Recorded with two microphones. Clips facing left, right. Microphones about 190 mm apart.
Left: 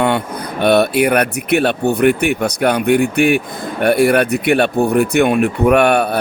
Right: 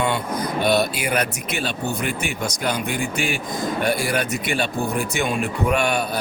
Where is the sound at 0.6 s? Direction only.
60° left (ahead or behind).